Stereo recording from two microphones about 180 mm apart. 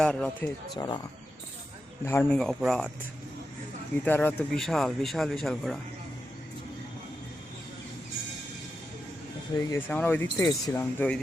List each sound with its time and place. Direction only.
0.0 s speech: 5° left (ahead or behind)
2.0 s speech: 10° left (ahead or behind)
4.0 s speech: 10° left (ahead or behind)
9.6 s speech: 20° left (ahead or behind)